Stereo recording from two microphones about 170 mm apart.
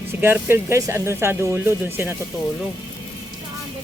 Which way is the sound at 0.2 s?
15° right (ahead or behind).